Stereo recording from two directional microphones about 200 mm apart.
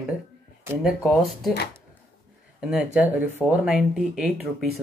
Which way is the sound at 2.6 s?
5° right (ahead or behind).